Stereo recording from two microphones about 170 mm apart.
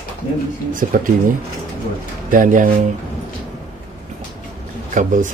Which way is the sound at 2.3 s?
50° right (ahead or behind).